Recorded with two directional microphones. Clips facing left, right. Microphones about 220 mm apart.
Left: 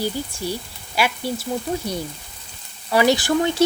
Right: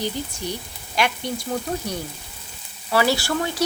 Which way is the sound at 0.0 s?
10° left (ahead or behind).